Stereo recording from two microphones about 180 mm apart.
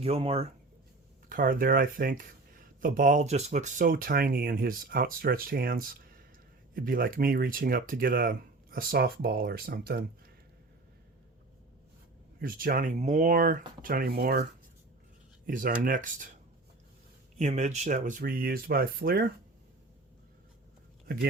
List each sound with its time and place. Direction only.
0.0 s speech: 35° right (ahead or behind)
1.3 s speech: 50° right (ahead or behind)
12.4 s speech: 55° right (ahead or behind)
15.4 s speech: 50° right (ahead or behind)
17.4 s speech: 40° right (ahead or behind); by 19.2 s 55° right (ahead or behind)